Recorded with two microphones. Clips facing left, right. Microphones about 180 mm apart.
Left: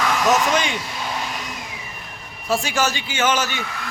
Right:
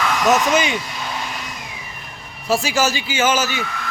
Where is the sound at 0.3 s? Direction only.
5° right (ahead or behind).